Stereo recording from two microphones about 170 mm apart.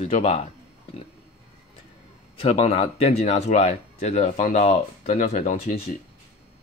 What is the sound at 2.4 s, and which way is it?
Speech, 35° left (ahead or behind).